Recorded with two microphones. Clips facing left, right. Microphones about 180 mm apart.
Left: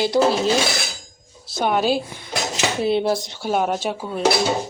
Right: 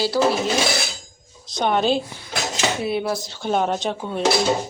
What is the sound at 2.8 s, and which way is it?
Speech, 25° left (ahead or behind).